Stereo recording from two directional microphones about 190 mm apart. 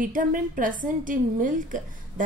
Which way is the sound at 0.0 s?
45° right (ahead or behind).